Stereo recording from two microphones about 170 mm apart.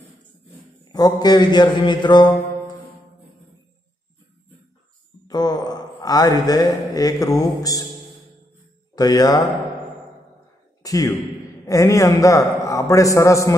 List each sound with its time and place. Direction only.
0.9 s a man's voice: 25° left (ahead or behind)
5.3 s speech: 25° left (ahead or behind)
8.9 s a man's voice: 20° left (ahead or behind)
10.8 s a man's voice: 20° left (ahead or behind)